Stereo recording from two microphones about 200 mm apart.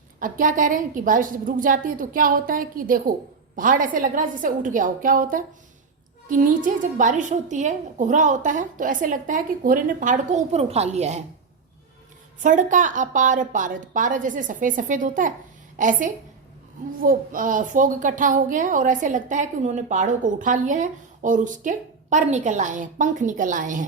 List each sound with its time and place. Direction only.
0.2 s a woman's voice: 40° right (ahead or behind)
12.4 s a woman's voice: 40° right (ahead or behind)